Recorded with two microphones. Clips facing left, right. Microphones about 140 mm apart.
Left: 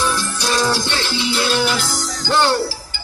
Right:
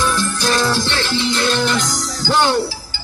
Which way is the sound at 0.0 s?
15° left (ahead or behind).